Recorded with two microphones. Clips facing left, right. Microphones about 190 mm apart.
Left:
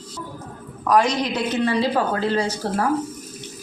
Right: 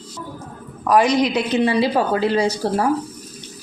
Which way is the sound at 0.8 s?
10° right (ahead or behind).